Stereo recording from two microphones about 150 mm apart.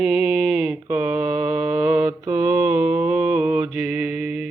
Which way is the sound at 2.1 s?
20° right (ahead or behind).